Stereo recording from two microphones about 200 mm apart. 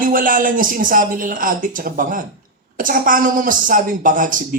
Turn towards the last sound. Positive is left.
turn(degrees=-40)  # may be behind; listen again after turning